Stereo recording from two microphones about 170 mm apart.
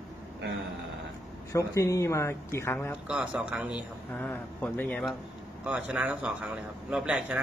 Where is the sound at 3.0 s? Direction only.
5° right (ahead or behind).